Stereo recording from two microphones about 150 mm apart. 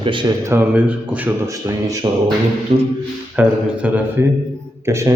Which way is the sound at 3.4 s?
10° right (ahead or behind).